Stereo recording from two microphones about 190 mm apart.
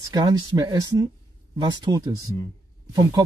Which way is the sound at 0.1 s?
20° right (ahead or behind).